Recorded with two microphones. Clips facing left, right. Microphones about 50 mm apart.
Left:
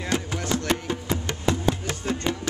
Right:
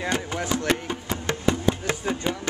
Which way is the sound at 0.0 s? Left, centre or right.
Centre.